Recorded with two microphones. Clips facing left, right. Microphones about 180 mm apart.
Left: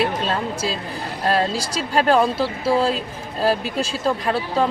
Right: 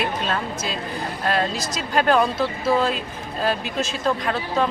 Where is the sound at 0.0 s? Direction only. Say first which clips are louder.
Left 3 dB; 30° left (ahead or behind).